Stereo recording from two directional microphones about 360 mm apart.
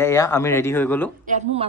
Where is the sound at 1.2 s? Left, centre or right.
Centre.